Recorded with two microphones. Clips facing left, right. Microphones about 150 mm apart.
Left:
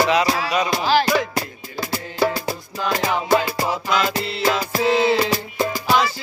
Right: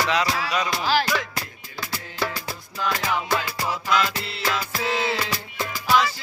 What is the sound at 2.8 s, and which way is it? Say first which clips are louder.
Music: left 4 dB; 35° left (ahead or behind).